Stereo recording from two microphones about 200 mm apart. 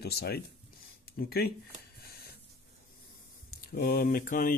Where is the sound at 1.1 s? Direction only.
50° left (ahead or behind).